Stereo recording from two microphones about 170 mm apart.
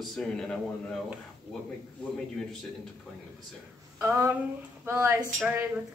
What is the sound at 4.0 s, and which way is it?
A man's voice, 15° right (ahead or behind).